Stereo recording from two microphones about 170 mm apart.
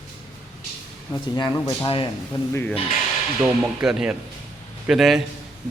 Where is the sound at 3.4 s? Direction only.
5° right (ahead or behind).